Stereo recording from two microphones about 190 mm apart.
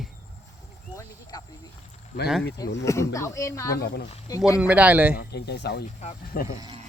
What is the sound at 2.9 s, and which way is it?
Speech, 15° left (ahead or behind).